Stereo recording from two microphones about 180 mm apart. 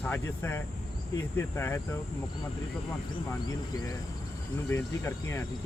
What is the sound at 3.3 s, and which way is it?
Speech, 20° left (ahead or behind).